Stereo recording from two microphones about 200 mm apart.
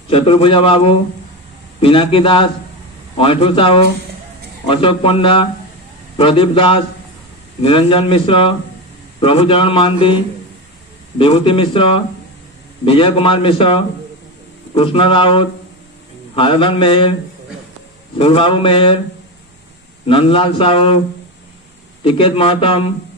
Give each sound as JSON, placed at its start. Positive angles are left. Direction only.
{"t": 0.1, "sound": "a man's voice", "side_deg": 25}
{"t": 11.1, "sound": "a man's voice", "side_deg": 25}
{"t": 18.1, "sound": "a man's voice", "side_deg": 25}
{"t": 20.1, "sound": "a man's voice", "side_deg": 25}
{"t": 22.0, "sound": "a man's voice", "side_deg": 25}